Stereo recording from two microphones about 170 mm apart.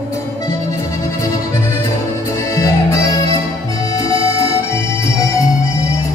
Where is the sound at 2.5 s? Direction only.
20° left (ahead or behind).